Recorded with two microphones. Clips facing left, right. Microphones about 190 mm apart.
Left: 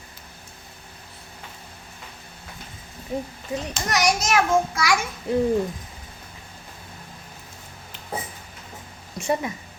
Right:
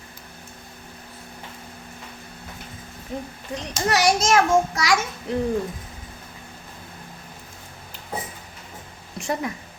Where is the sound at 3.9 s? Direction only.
30° right (ahead or behind).